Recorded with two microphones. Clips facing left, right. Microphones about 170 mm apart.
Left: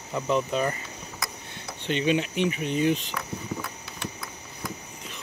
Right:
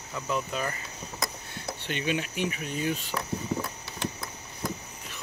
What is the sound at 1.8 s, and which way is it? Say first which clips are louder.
Speech: left 6 dB; 50° right (ahead or behind).